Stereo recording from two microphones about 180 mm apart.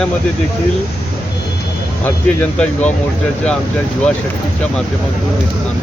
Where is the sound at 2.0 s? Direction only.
10° left (ahead or behind).